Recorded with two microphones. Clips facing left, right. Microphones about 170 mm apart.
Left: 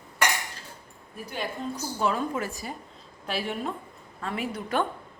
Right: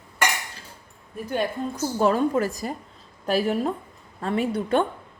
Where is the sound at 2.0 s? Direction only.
40° right (ahead or behind).